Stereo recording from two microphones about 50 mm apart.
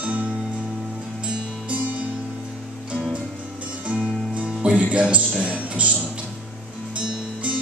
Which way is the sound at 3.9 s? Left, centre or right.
Centre.